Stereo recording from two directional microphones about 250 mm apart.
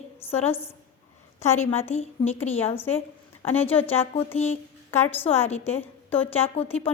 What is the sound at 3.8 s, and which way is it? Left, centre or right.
Speech, left.